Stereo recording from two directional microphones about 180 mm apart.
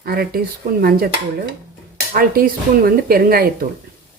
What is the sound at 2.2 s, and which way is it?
Speech, 55° right (ahead or behind).